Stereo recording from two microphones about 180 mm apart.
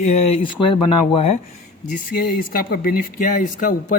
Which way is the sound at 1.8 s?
45° left (ahead or behind).